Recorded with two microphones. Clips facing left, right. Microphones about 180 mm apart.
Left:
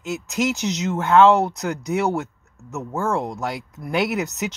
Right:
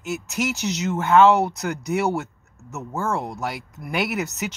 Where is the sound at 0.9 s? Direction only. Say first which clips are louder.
Left 1 dB; 5° right (ahead or behind).